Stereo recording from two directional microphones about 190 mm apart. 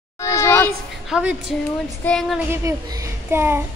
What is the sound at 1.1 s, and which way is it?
A woman's voice, 5° right (ahead or behind).